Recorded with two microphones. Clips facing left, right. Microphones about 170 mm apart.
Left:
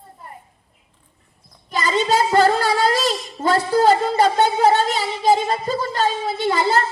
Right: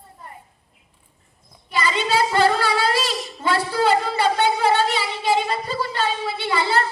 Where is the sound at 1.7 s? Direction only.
40° left (ahead or behind).